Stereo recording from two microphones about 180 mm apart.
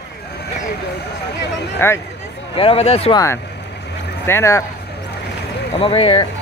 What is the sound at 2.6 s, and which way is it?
Speech, 35° left (ahead or behind).